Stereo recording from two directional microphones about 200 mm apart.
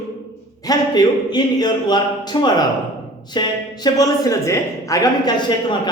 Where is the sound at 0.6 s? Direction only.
20° left (ahead or behind).